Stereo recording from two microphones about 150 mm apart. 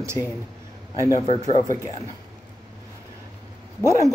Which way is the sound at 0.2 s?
20° left (ahead or behind).